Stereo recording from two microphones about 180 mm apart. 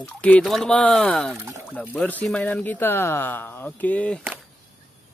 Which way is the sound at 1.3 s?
15° right (ahead or behind).